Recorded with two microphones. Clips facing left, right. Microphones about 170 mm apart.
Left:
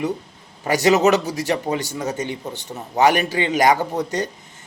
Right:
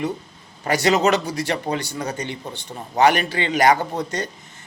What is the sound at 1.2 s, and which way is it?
Speech, 20° left (ahead or behind).